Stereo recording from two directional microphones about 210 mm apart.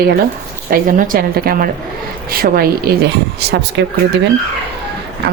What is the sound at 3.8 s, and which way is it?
Speech, 55° right (ahead or behind).